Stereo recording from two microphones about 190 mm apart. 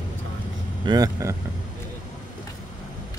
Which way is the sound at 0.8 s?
20° right (ahead or behind).